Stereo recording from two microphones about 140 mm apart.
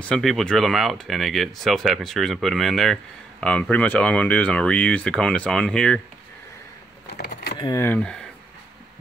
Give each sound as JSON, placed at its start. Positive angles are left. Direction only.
{"t": 0.0, "sound": "speech", "side_deg": 5}
{"t": 7.5, "sound": "speech", "side_deg": 30}
{"t": 7.8, "sound": "speech", "side_deg": 10}